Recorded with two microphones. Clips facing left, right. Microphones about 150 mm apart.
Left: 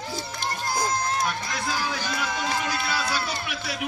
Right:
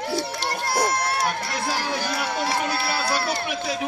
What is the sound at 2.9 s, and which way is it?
Run, 60° right (ahead or behind).